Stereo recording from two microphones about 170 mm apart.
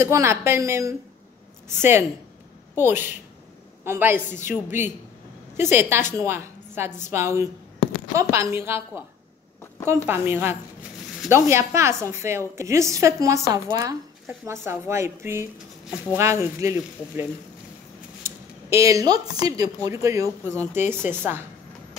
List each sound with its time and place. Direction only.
0.0 s a woman's voice: 15° right (ahead or behind)